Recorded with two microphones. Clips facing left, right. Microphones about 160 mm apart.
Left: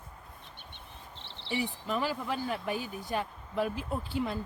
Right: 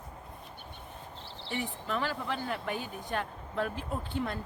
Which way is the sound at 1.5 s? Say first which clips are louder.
Left 2 dB; 5° left (ahead or behind).